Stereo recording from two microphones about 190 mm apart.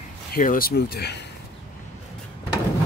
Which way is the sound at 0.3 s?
50° left (ahead or behind).